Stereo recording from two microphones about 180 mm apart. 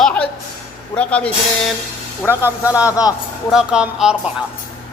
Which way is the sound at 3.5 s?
5° right (ahead or behind).